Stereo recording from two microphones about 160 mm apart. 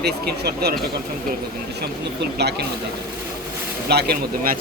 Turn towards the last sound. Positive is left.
turn(degrees=-65)  # may be behind; listen again after turning